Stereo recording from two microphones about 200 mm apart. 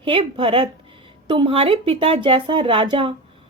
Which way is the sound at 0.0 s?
25° right (ahead or behind).